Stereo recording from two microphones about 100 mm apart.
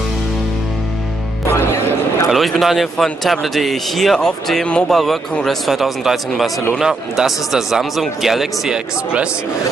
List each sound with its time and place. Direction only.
1.5 s music: 30° left (ahead or behind)
2.3 s a man's voice: centre (ahead or behind)